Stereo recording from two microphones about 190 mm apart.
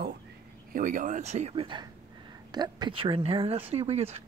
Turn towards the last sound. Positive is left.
turn(degrees=-30)  # may be behind; listen again after turning